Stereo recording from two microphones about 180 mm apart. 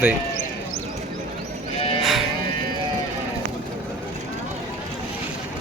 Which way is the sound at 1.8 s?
30° left (ahead or behind).